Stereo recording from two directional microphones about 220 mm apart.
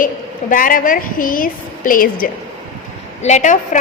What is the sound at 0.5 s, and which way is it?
A woman's voice, 40° left (ahead or behind).